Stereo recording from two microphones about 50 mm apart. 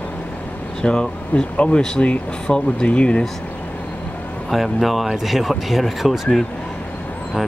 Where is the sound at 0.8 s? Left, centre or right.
Centre.